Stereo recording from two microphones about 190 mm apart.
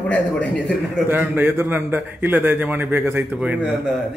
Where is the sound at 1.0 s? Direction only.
10° right (ahead or behind).